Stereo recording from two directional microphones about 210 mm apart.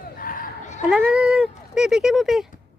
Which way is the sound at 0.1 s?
40° left (ahead or behind).